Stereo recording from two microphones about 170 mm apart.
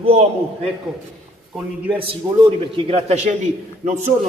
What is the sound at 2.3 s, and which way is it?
Speech, 30° right (ahead or behind).